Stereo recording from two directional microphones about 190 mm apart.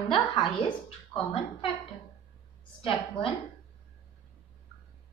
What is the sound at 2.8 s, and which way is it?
Speech, 30° left (ahead or behind).